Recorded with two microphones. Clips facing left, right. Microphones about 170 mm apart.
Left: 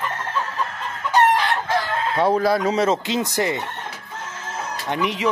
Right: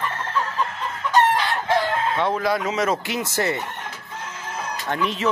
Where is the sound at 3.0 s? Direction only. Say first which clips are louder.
Left 2 dB; 20° left (ahead or behind).